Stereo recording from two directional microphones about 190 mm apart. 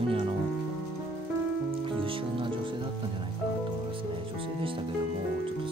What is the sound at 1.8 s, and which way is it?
Music, 25° right (ahead or behind).